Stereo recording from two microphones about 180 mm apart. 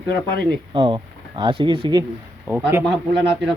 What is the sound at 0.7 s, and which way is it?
Speech, 30° right (ahead or behind).